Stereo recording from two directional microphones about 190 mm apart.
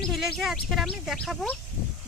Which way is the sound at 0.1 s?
Centre (ahead or behind).